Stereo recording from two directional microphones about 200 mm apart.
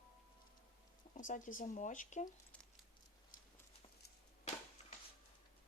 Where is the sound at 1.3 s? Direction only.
40° left (ahead or behind).